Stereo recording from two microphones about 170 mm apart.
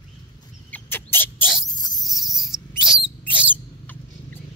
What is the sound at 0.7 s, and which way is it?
Owl, 10° left (ahead or behind).